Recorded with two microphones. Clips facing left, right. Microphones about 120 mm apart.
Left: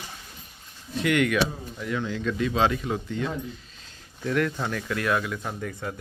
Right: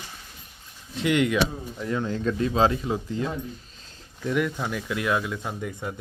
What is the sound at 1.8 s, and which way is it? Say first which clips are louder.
Speech: right 2 dB; 35° right (ahead or behind).